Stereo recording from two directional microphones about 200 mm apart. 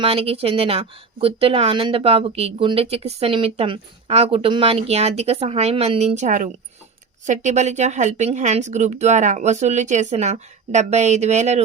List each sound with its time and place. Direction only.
0.0 s a woman's voice: 30° right (ahead or behind)